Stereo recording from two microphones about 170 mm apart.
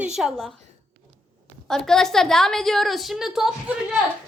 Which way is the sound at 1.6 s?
Centre (ahead or behind).